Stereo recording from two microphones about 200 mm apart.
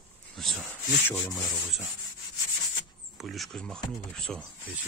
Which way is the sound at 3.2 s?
Centre (ahead or behind).